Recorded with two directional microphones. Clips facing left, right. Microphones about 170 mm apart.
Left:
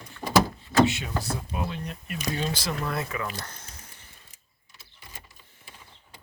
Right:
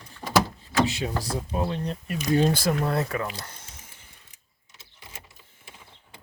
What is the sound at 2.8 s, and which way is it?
Speech, 35° right (ahead or behind).